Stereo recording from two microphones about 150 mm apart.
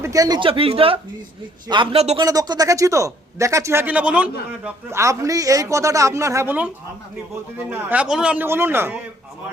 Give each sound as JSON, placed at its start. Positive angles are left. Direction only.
{"t": 0.0, "sound": "speech", "side_deg": -25}
{"t": 2.2, "sound": "a man's voice", "side_deg": -25}
{"t": 7.7, "sound": "a man's voice", "side_deg": -10}